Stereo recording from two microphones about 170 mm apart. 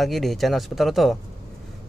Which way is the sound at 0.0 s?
Centre (ahead or behind).